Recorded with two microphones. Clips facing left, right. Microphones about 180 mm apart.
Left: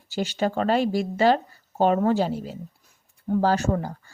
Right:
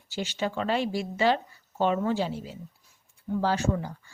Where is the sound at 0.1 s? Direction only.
45° left (ahead or behind).